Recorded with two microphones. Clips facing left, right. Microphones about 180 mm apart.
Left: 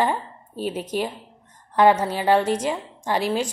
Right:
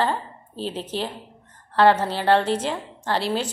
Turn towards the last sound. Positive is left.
turn(degrees=10)  # may be behind; listen again after turning